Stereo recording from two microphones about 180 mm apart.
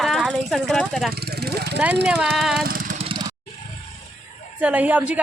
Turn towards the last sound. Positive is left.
turn(degrees=-10)  # may be behind; listen again after turning